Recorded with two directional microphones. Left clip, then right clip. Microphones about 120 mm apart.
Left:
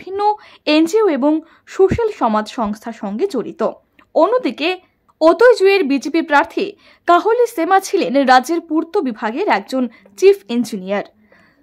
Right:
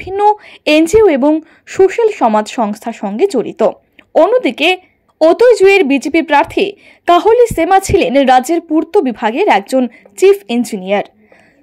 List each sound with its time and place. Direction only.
0.1 s speech: 20° right (ahead or behind)